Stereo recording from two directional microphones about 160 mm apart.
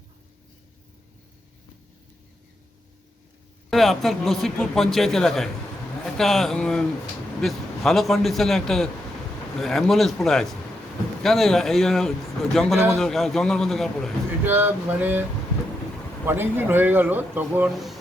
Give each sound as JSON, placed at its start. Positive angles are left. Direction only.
{"t": 3.7, "sound": "a man's voice", "side_deg": 0}
{"t": 14.3, "sound": "speech", "side_deg": -15}
{"t": 16.2, "sound": "speech", "side_deg": -15}